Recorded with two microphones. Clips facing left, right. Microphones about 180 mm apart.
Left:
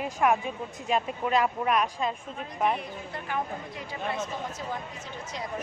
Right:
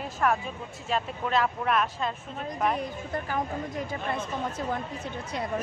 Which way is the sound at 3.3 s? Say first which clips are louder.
Left 1 dB; 45° right (ahead or behind).